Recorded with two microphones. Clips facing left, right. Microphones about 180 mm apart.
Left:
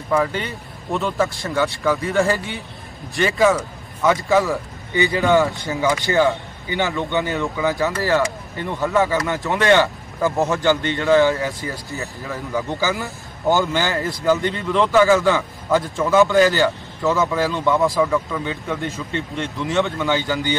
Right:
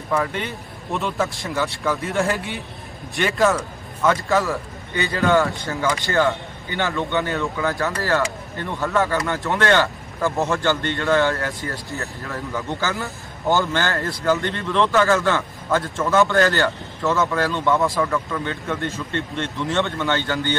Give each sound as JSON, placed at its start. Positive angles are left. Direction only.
{"t": 0.1, "sound": "speech", "side_deg": 0}
{"t": 4.9, "sound": "a man's voice", "side_deg": 15}
{"t": 12.3, "sound": "a man's voice", "side_deg": 0}